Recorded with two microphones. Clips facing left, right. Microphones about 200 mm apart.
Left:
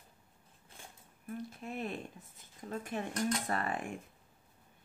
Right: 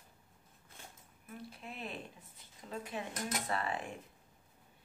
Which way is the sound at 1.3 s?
45° left (ahead or behind).